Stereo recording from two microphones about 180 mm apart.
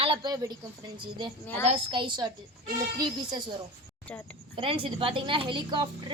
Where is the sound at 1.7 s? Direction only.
30° right (ahead or behind).